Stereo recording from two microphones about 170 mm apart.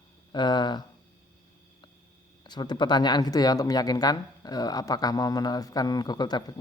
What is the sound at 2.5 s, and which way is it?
Speech, 25° left (ahead or behind).